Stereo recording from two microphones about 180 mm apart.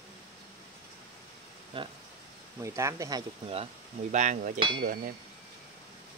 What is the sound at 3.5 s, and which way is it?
Speech, 35° right (ahead or behind).